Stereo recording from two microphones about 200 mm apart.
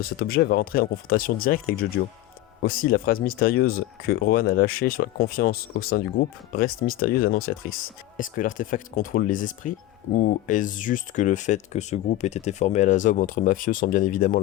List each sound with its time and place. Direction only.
0.0 s speech: 50° left (ahead or behind)